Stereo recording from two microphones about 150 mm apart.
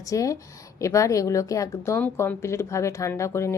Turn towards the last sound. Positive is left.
turn(degrees=20)  # may be behind; listen again after turning